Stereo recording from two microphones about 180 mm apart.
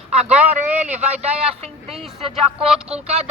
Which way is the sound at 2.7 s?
5° right (ahead or behind).